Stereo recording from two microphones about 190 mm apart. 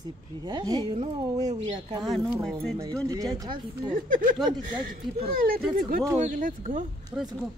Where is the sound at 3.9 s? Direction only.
45° right (ahead or behind).